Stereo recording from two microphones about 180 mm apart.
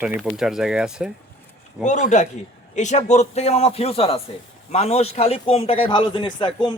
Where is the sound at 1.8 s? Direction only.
40° left (ahead or behind).